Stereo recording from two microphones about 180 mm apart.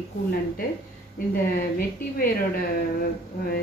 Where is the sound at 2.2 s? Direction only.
55° left (ahead or behind).